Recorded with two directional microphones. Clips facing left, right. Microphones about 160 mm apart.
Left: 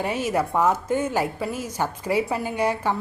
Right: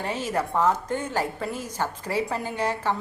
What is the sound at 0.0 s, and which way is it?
A woman's voice, 10° left (ahead or behind).